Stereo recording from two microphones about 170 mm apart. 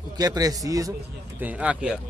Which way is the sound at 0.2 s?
20° right (ahead or behind).